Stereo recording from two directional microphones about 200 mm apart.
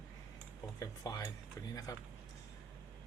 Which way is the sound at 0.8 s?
20° left (ahead or behind).